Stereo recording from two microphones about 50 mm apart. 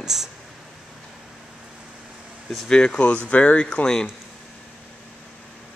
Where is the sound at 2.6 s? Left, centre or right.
Centre.